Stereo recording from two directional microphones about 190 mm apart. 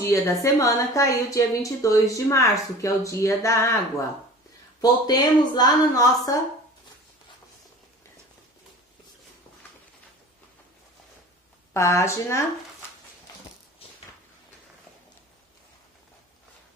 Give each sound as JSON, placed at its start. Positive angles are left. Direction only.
{"t": 0.0, "sound": "a woman's voice", "side_deg": 15}
{"t": 5.0, "sound": "speech", "side_deg": 20}
{"t": 11.7, "sound": "a woman's voice", "side_deg": 15}